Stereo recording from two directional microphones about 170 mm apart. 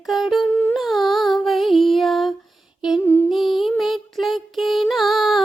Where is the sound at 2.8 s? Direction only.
Centre (ahead or behind).